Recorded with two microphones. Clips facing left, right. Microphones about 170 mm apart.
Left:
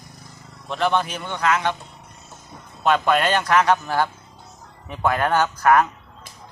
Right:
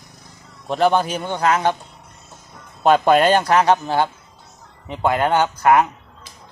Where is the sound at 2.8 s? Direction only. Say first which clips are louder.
Right 5 dB; 40° right (ahead or behind); by 5.9 s 20° right (ahead or behind).